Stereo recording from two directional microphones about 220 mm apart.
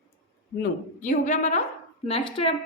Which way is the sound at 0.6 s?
35° left (ahead or behind).